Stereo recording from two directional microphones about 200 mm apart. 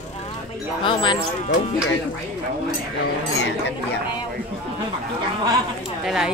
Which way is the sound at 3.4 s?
60° left (ahead or behind).